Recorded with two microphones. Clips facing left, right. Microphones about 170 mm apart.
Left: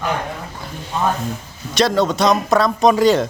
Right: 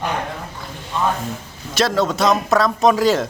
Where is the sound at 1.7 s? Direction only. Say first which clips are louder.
Left 2 dB; centre (ahead or behind).